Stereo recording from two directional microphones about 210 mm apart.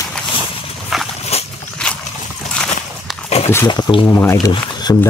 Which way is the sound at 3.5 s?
15° left (ahead or behind).